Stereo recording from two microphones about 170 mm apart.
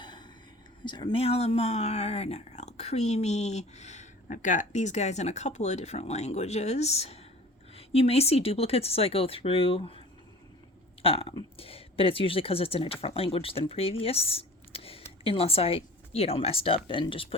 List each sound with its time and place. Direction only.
0.0 s whispering: 25° left (ahead or behind)
0.9 s speech: 25° left (ahead or behind)
11.0 s speech: 35° left (ahead or behind)